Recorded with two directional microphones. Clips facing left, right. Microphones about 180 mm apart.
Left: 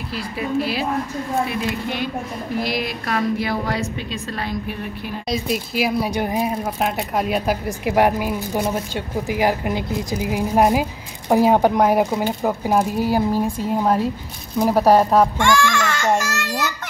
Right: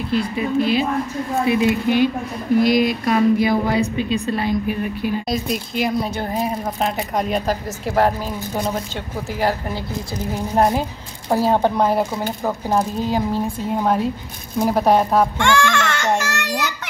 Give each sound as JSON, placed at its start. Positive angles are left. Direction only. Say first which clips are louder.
{"t": 0.1, "sound": "a woman's voice", "louder": "right 4 dB", "side_deg": 5}
{"t": 6.4, "sound": "a woman's voice", "louder": "even", "side_deg": 5}
{"t": 15.4, "sound": "speech", "louder": "even", "side_deg": -65}
{"t": 16.2, "sound": "child singing", "louder": "even", "side_deg": -65}